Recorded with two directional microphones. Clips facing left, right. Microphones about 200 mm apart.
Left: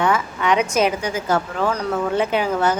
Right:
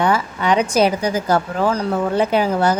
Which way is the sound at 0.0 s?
35° right (ahead or behind).